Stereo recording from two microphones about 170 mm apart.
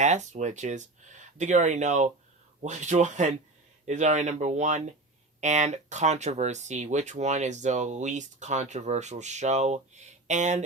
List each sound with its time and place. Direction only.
0.0 s speech: 45° right (ahead or behind)